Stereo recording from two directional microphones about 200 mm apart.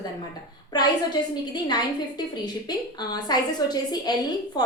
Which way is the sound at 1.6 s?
20° left (ahead or behind).